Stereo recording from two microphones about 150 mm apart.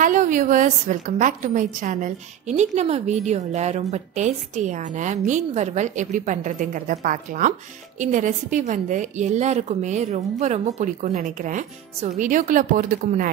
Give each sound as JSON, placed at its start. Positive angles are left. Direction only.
{"t": 0.0, "sound": "a woman's voice", "side_deg": -60}